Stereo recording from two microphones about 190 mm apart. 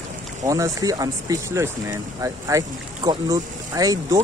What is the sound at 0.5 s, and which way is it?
Speech, 15° right (ahead or behind).